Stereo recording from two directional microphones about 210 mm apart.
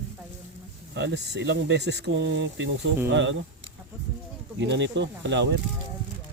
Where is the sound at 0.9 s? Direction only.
55° right (ahead or behind).